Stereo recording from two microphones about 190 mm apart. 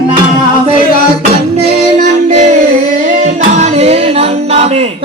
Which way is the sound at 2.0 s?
40° right (ahead or behind).